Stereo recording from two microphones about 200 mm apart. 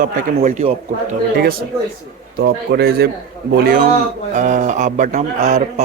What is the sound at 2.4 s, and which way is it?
A man's voice, 50° right (ahead or behind).